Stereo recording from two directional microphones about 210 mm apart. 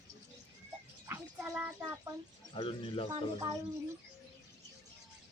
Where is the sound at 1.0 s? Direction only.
10° right (ahead or behind).